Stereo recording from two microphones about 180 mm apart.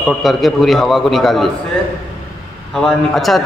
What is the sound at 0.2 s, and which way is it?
A man's voice, centre (ahead or behind).